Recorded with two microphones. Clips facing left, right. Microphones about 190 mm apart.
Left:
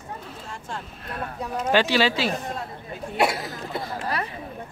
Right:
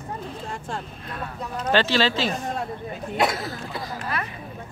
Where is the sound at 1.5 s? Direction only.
10° left (ahead or behind).